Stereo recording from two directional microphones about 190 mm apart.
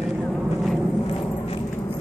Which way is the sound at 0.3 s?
Centre (ahead or behind).